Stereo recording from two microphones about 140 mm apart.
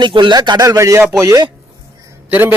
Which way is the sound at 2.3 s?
10° right (ahead or behind).